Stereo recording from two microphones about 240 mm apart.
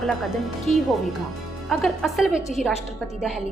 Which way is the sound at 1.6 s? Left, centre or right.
Centre.